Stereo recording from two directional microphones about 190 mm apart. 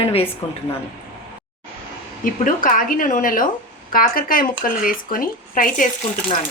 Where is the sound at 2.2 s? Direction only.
45° left (ahead or behind).